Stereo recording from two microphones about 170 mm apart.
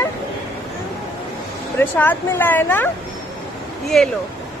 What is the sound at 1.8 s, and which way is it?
Speech, 10° left (ahead or behind).